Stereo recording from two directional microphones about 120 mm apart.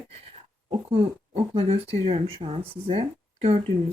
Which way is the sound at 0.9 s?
55° right (ahead or behind).